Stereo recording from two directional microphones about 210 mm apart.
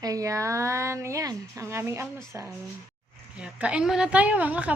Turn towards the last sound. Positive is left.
turn(degrees=-5)  # may be behind; listen again after turning